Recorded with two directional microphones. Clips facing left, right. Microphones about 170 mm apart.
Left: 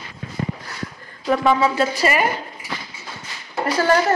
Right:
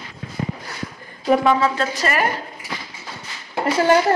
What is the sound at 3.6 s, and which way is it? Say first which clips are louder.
Speech: right 2 dB; 25° right (ahead or behind).